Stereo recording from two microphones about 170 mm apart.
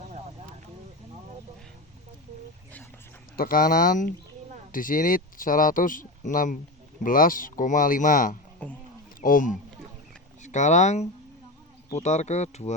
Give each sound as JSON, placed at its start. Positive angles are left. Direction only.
{"t": 3.3, "sound": "speech", "side_deg": 55}
{"t": 8.6, "sound": "speech", "side_deg": 10}
{"t": 9.2, "sound": "speech", "side_deg": 50}